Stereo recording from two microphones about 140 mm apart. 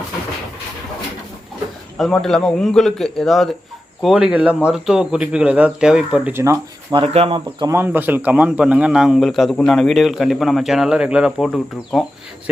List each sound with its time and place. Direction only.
2.0 s a man's voice: 5° left (ahead or behind)
6.3 s speech: 20° right (ahead or behind)
6.9 s speech: 45° right (ahead or behind)
7.7 s a man's voice: 15° right (ahead or behind); by 12.0 s centre (ahead or behind)